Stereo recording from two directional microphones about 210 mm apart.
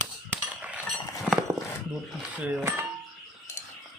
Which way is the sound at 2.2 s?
5° right (ahead or behind).